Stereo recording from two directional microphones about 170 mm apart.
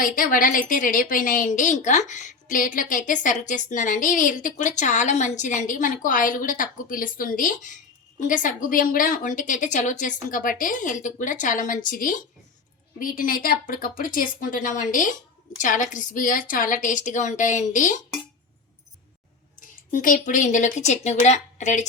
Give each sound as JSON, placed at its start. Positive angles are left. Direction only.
{"t": 0.0, "sound": "a woman's voice", "side_deg": 55}
{"t": 19.9, "sound": "a woman's voice", "side_deg": 50}